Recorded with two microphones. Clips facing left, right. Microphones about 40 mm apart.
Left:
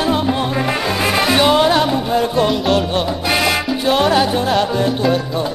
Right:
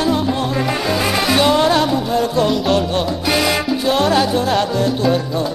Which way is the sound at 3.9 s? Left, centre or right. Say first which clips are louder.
Left 2 dB; centre.